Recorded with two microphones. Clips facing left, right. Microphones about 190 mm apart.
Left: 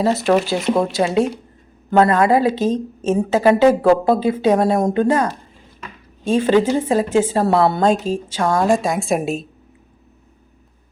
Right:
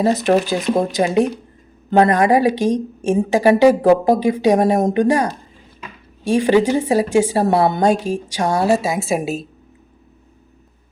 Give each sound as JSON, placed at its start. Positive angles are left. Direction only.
{"t": 0.0, "sound": "a woman's voice", "side_deg": -15}